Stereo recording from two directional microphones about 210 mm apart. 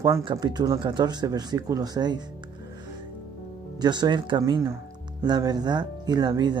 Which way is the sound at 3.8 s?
20° right (ahead or behind).